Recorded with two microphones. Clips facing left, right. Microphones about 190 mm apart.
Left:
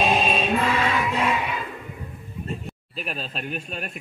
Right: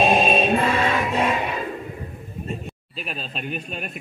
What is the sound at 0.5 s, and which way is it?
Music, 35° right (ahead or behind).